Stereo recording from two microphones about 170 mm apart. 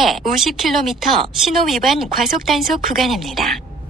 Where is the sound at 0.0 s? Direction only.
Centre (ahead or behind).